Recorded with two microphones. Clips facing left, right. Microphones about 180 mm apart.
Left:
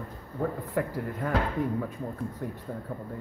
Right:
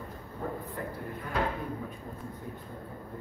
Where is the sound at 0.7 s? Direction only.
90° left.